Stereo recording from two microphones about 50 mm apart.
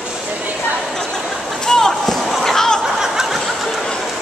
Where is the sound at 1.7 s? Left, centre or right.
Centre.